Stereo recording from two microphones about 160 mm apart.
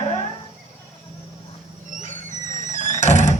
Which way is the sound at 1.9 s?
55° right (ahead or behind).